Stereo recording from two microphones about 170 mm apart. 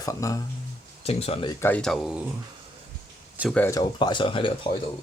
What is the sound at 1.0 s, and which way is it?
Speech, 35° left (ahead or behind).